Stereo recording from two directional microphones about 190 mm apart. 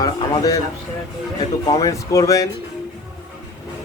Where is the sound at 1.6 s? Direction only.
20° left (ahead or behind).